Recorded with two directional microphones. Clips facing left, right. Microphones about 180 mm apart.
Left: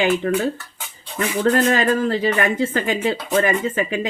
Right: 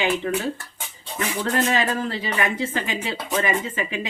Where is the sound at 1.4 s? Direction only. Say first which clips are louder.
Left 6 dB; 45° left (ahead or behind).